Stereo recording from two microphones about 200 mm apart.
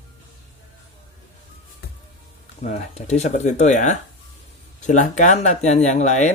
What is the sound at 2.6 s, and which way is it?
Speech, 35° left (ahead or behind).